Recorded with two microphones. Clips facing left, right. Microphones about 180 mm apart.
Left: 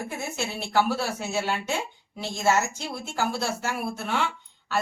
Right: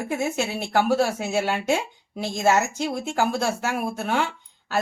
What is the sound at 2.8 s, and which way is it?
Speech, 50° right (ahead or behind).